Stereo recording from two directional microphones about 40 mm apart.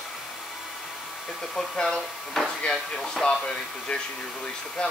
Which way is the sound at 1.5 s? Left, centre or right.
Centre.